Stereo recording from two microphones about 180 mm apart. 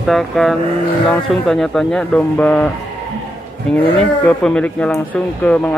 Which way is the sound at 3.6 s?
5° left (ahead or behind).